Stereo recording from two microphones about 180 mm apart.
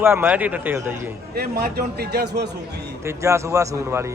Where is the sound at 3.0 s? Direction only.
15° right (ahead or behind).